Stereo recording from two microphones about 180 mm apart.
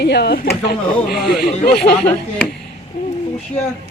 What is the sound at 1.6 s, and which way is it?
Speech, 60° left (ahead or behind).